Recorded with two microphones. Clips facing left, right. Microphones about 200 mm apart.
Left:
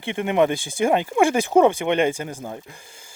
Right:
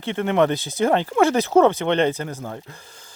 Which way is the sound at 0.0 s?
15° left (ahead or behind).